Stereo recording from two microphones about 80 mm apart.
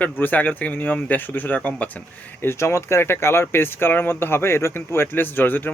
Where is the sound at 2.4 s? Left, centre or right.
Left.